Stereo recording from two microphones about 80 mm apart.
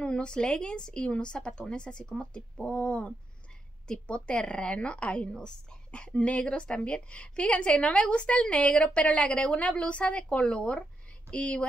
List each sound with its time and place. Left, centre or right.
0.0 s a woman's voice: centre